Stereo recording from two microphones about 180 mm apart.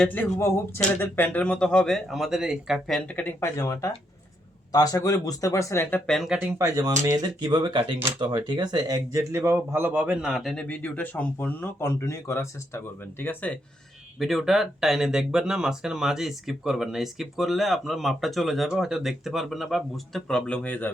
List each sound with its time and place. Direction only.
0.0 s speech: 10° left (ahead or behind)
6.6 s speech: 20° right (ahead or behind); by 20.9 s 10° left (ahead or behind)